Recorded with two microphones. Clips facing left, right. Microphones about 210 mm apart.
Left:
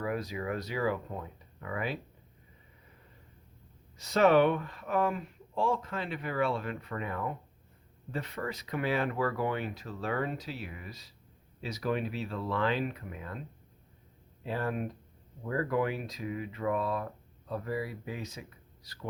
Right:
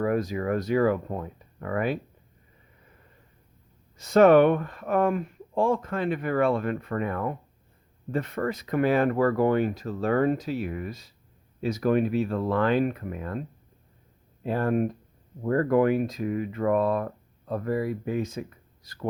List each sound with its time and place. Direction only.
0.0 s speech: 50° right (ahead or behind)
3.9 s speech: 50° right (ahead or behind)
14.4 s speech: 50° right (ahead or behind)